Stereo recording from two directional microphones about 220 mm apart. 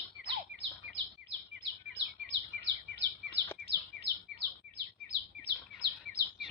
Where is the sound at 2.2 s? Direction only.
50° right (ahead or behind).